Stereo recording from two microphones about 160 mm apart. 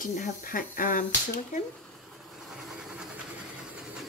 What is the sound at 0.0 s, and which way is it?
Speech, 60° left (ahead or behind).